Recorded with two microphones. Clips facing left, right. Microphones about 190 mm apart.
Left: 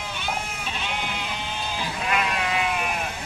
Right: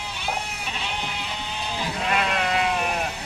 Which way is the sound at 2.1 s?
40° right (ahead or behind).